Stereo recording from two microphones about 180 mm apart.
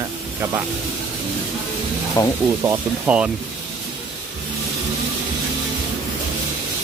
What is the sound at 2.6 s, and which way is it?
Speech, 10° right (ahead or behind).